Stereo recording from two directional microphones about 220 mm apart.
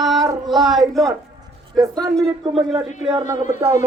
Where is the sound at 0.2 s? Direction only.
20° right (ahead or behind).